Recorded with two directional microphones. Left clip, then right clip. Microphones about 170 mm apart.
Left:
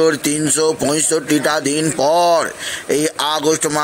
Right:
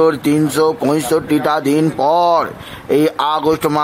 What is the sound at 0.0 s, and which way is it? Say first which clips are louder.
Speech: right 2 dB; centre (ahead or behind).